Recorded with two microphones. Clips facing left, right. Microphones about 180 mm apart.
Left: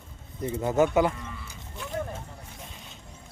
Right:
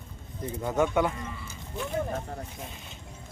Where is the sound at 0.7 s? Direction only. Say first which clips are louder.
Left 3 dB; 5° left (ahead or behind).